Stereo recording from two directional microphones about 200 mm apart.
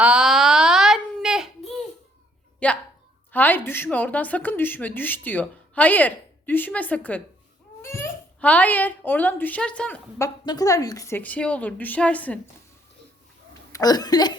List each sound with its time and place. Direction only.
0.0 s a sound: 5° right (ahead or behind)
3.3 s a child's voice: 10° left (ahead or behind)
13.7 s speech: 20° left (ahead or behind)